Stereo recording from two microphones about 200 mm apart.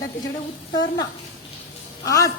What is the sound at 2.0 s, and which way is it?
Speech, 15° left (ahead or behind).